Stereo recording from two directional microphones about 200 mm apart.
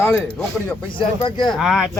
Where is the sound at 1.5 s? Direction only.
Centre (ahead or behind).